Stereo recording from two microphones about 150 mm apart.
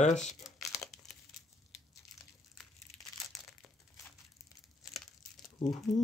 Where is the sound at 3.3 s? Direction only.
Centre (ahead or behind).